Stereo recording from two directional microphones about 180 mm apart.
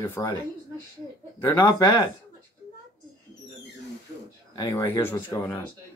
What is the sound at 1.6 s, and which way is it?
Speech, 25° left (ahead or behind).